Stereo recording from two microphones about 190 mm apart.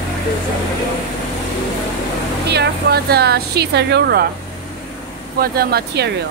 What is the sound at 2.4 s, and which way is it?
A woman's voice, 60° right (ahead or behind).